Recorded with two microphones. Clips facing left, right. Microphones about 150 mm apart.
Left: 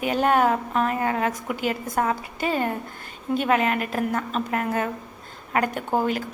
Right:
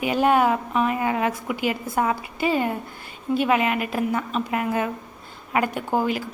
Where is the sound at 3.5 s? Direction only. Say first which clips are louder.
Left 2 dB; 40° left (ahead or behind).